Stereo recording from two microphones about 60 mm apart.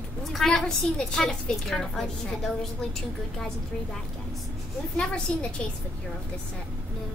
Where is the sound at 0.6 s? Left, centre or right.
Centre.